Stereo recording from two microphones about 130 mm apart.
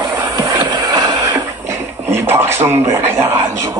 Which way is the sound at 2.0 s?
15° right (ahead or behind).